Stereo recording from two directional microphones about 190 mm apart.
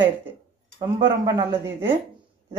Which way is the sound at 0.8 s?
20° right (ahead or behind).